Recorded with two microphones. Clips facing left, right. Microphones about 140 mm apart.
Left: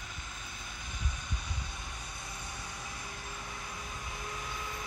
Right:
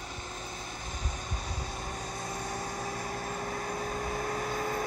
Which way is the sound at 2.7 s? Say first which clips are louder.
Right 9 dB; 45° right (ahead or behind).